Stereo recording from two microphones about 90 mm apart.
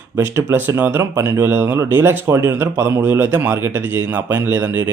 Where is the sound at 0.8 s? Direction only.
20° right (ahead or behind).